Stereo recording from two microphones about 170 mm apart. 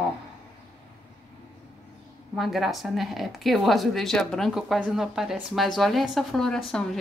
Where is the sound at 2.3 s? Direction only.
Centre (ahead or behind).